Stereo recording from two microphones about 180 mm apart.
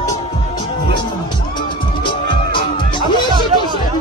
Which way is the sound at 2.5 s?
25° left (ahead or behind).